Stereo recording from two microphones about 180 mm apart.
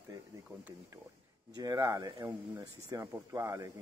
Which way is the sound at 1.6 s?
20° right (ahead or behind).